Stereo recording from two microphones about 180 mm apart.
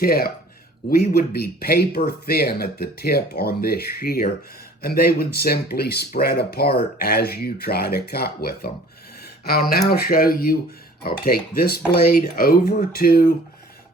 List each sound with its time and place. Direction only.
0.0 s speech: 55° left (ahead or behind)